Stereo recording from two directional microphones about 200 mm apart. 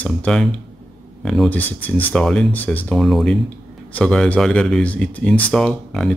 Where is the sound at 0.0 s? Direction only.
5° left (ahead or behind).